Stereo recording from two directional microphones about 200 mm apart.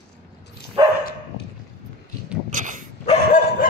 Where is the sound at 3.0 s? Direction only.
35° left (ahead or behind).